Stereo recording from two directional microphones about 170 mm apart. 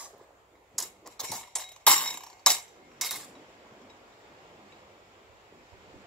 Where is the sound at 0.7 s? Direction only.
Centre (ahead or behind).